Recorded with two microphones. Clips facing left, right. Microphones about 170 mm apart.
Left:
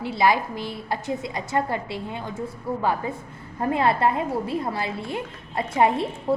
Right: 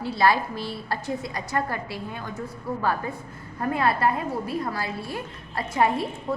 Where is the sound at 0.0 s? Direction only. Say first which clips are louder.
Left 1 dB; 20° left (ahead or behind).